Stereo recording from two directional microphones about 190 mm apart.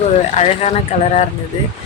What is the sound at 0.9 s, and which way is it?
Speech, 35° left (ahead or behind).